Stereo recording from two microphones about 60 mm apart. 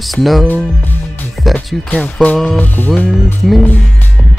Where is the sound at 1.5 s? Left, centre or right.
Left.